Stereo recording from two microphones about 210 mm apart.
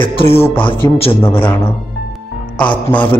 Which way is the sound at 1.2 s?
10° left (ahead or behind).